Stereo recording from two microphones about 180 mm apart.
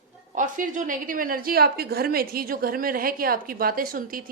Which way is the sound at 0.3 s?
45° right (ahead or behind).